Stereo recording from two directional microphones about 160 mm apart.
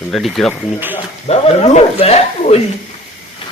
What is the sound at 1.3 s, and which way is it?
Speech, 40° left (ahead or behind).